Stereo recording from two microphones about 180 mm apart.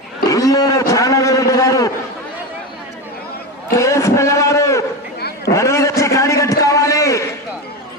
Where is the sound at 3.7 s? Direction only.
15° left (ahead or behind).